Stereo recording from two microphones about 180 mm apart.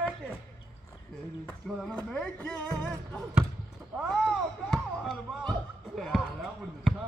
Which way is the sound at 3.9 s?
Centre (ahead or behind).